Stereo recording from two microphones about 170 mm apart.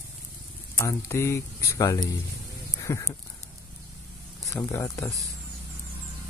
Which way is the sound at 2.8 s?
20° left (ahead or behind).